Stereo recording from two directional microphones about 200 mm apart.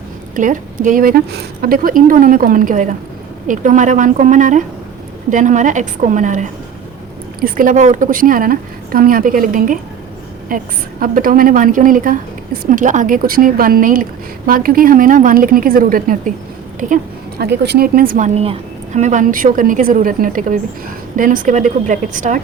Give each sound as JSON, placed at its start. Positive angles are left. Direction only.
{"t": 0.3, "sound": "a woman's voice", "side_deg": -40}
{"t": 7.4, "sound": "a woman's voice", "side_deg": -45}